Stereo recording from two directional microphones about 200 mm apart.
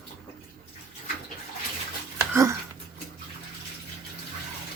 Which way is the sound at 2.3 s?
15° right (ahead or behind).